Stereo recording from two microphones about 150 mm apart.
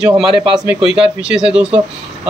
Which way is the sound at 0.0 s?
5° right (ahead or behind).